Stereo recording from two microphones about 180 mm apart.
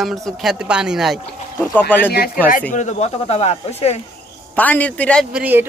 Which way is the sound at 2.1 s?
60° left (ahead or behind).